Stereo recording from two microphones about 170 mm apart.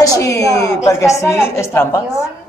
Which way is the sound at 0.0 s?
20° left (ahead or behind).